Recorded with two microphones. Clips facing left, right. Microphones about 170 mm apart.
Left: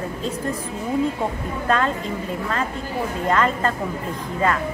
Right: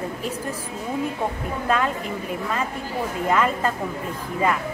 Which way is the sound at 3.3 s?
10° right (ahead or behind).